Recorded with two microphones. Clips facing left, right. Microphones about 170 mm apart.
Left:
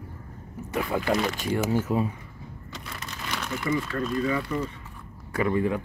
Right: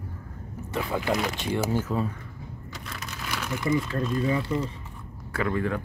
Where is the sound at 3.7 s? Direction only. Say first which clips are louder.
Right 1 dB; 25° right (ahead or behind).